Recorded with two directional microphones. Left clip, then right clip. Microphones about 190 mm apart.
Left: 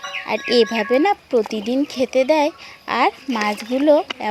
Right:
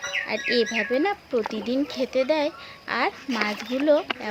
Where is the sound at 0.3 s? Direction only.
35° left (ahead or behind).